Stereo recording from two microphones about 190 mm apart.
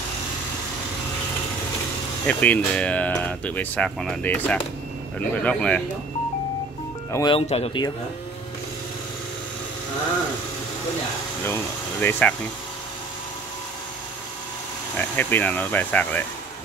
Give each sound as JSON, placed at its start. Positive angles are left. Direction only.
{"t": 2.2, "sound": "speech", "side_deg": 5}
{"t": 7.1, "sound": "speech", "side_deg": 15}
{"t": 7.3, "sound": "speech", "side_deg": 30}
{"t": 11.4, "sound": "speech", "side_deg": 10}
{"t": 15.0, "sound": "speech", "side_deg": 10}